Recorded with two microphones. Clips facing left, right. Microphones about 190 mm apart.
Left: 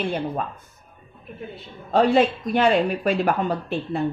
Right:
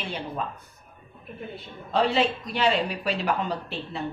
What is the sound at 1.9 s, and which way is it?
A woman's voice, 50° left (ahead or behind).